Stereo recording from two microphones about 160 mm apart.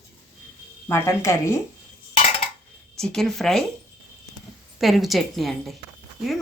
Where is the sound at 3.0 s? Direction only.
5° left (ahead or behind).